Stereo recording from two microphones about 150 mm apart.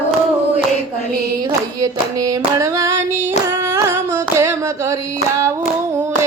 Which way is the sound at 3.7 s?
20° right (ahead or behind).